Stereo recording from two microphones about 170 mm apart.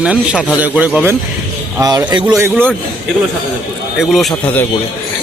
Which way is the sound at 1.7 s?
20° right (ahead or behind).